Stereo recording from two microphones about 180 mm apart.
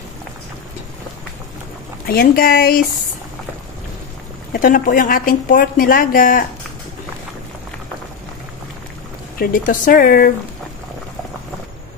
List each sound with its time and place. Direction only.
2.0 s speech: 55° left (ahead or behind)
4.5 s a woman's voice: 50° left (ahead or behind)
9.4 s a woman's voice: 50° left (ahead or behind)